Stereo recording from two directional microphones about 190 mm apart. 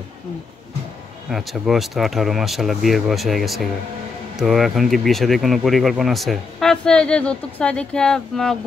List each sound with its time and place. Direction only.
1.3 s speech: centre (ahead or behind)